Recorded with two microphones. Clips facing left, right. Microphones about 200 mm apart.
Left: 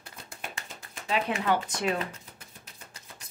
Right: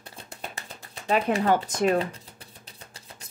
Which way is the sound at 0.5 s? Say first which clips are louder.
Right 2 dB; 35° right (ahead or behind).